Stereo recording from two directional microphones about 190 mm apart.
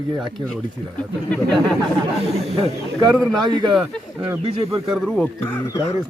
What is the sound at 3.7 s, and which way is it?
Speech, 5° right (ahead or behind).